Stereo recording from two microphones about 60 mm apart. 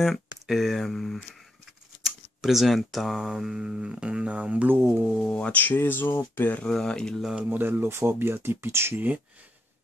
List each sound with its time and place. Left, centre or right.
0.0 s speech: centre
2.4 s speech: centre
3.3 s a sound: centre
4.6 s speech: right
5.2 s speech: centre; by 6.6 s left
6.6 s speech: centre
7.5 s speech: right